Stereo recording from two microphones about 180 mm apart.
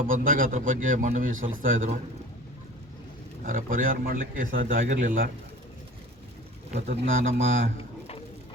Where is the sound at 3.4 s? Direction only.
50° right (ahead or behind).